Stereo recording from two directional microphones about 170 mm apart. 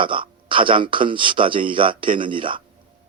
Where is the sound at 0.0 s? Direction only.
30° right (ahead or behind).